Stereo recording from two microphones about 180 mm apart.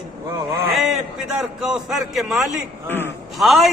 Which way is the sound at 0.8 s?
5° right (ahead or behind).